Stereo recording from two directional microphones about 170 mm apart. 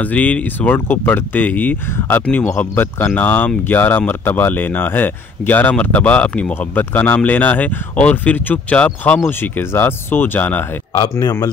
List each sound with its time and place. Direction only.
0.0 s speech: 10° left (ahead or behind)
11.1 s a man's voice: 20° left (ahead or behind)